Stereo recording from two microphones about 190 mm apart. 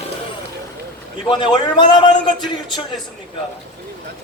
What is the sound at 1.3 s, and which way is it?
Speech, 25° left (ahead or behind).